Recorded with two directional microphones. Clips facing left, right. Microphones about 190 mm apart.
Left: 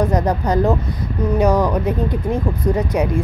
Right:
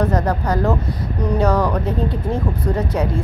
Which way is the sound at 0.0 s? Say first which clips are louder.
Left 1 dB; 15° left (ahead or behind).